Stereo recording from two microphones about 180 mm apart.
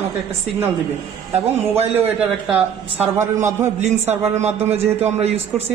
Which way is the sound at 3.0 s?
40° right (ahead or behind).